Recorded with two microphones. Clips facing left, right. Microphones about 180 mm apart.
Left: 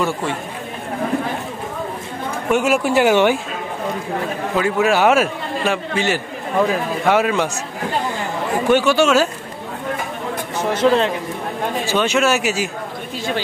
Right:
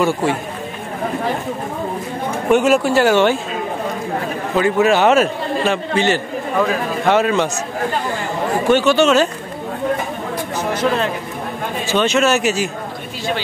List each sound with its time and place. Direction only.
2.5 s a man's voice: 10° left (ahead or behind)
4.6 s a man's voice: 5° left (ahead or behind)
8.6 s a man's voice: 10° left (ahead or behind)
10.7 s speech: 25° left (ahead or behind)
11.9 s a man's voice: 10° left (ahead or behind)